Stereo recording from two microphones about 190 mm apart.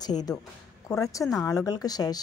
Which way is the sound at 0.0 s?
20° left (ahead or behind).